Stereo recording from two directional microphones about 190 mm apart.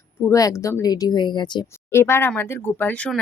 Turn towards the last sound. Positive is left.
turn(degrees=5)  # may be behind; listen again after turning